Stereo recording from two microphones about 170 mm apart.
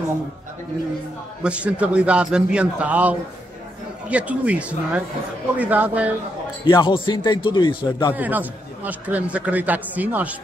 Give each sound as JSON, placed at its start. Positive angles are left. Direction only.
{"t": 1.4, "sound": "a man's voice", "side_deg": -5}
{"t": 6.6, "sound": "a man's voice", "side_deg": 30}
{"t": 8.1, "sound": "a man's voice", "side_deg": -10}